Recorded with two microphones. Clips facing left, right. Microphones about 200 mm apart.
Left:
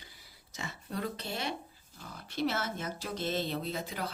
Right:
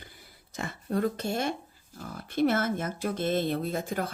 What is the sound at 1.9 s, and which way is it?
Speech, 50° right (ahead or behind).